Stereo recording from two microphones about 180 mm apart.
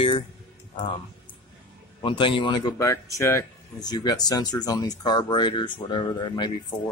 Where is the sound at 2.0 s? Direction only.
30° left (ahead or behind).